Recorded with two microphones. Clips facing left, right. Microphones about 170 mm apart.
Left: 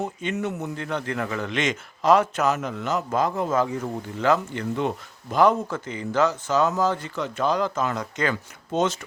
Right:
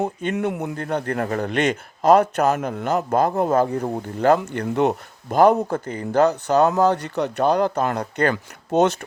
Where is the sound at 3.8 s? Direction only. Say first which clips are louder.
Right 5 dB; 45° right (ahead or behind).